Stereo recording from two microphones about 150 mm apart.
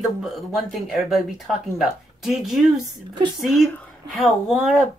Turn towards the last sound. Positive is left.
turn(degrees=0)  # may be behind; listen again after turning